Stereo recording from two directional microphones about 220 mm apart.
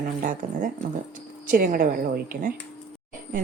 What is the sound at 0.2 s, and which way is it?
Speech, 40° right (ahead or behind).